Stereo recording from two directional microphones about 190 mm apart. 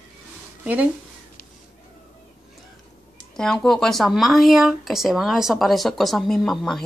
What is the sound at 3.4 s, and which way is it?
Speech, 5° left (ahead or behind).